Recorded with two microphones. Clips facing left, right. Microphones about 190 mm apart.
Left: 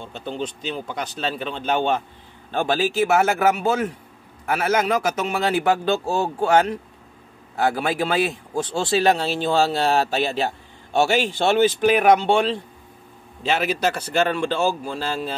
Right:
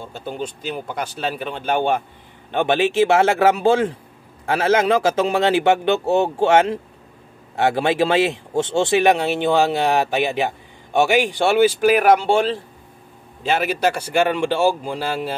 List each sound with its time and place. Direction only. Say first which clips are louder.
0.0 s speech: right 1 dB; 10° right (ahead or behind)
2.5 s a man's voice: right 4 dB; 20° right (ahead or behind); by 12.5 s centre (ahead or behind)
13.5 s a man's voice: right 2 dB; 50° right (ahead or behind)
13.9 s speech: right 2 dB; 10° right (ahead or behind)